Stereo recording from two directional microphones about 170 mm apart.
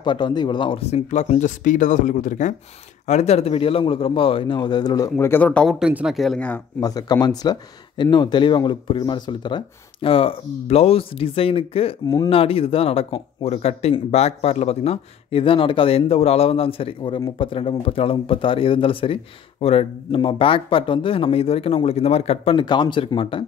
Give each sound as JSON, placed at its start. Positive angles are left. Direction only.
{"t": 0.0, "sound": "speech", "side_deg": 25}
{"t": 5.2, "sound": "speech", "side_deg": 10}
{"t": 6.8, "sound": "speech", "side_deg": 20}